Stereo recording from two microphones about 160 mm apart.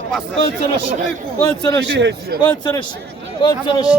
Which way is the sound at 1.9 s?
90° right.